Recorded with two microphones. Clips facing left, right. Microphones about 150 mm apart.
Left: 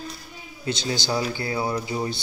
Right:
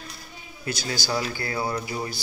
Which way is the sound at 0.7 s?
20° left (ahead or behind).